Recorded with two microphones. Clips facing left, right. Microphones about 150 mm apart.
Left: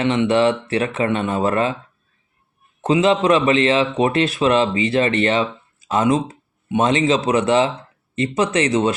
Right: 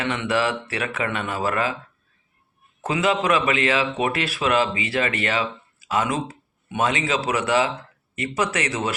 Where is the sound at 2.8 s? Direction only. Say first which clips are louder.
Left 6 dB; 25° left (ahead or behind).